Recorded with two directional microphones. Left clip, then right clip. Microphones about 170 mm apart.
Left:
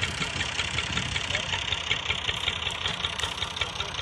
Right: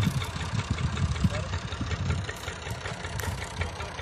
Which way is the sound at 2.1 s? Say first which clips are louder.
Left 9 dB; 45° right (ahead or behind).